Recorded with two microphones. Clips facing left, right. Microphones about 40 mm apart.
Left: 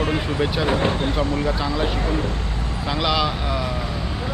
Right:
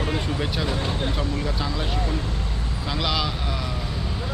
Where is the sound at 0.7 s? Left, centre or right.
Left.